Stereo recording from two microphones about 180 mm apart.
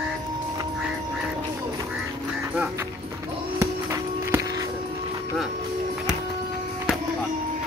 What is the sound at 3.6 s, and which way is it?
Music, 15° right (ahead or behind).